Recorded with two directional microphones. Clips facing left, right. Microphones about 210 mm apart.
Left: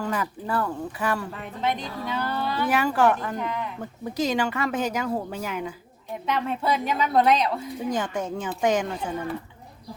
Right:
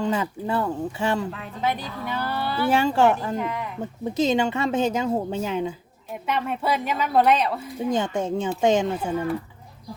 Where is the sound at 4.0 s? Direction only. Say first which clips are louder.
Right 3 dB; 25° right (ahead or behind).